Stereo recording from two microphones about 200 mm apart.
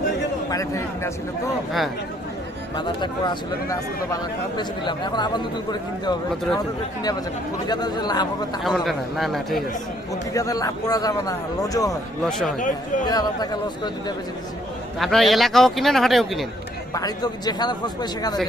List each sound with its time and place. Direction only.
0.5 s a man's voice: 15° left (ahead or behind)
2.8 s speech: 20° left (ahead or behind)
7.6 s speech: 20° left (ahead or behind)
8.6 s speech: centre (ahead or behind)
10.3 s a man's voice: 15° left (ahead or behind)
12.3 s speech: centre (ahead or behind)
12.5 s speech: 40° left (ahead or behind)
13.0 s speech: 20° left (ahead or behind)
15.0 s speech: centre (ahead or behind)
16.9 s speech: 20° left (ahead or behind)